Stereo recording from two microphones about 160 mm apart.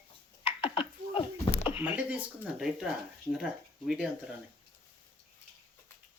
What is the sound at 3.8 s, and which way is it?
Speech, 5° right (ahead or behind).